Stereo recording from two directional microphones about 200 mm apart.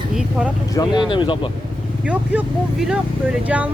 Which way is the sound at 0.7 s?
20° left (ahead or behind).